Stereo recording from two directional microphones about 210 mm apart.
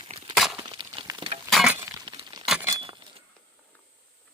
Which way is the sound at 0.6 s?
20° right (ahead or behind).